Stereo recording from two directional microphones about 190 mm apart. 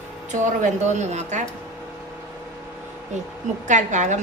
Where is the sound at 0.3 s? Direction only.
40° right (ahead or behind).